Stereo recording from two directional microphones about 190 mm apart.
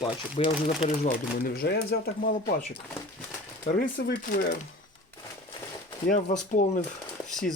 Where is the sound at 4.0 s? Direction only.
55° left (ahead or behind).